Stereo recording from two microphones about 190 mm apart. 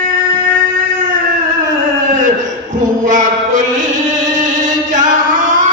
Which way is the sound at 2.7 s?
40° right (ahead or behind).